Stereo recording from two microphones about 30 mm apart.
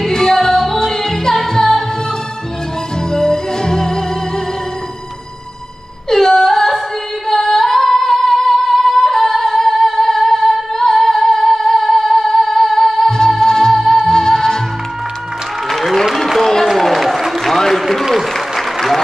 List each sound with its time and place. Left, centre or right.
0.1 s music: centre
3.1 s music: centre
6.0 s music: centre
7.2 s singing: centre
12.7 s music: centre
15.7 s applause: centre
16.3 s a sound: centre
16.8 s a sound: centre
18.1 s applause: centre